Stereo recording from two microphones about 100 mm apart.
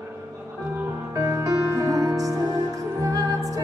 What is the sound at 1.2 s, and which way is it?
Music, 30° right (ahead or behind).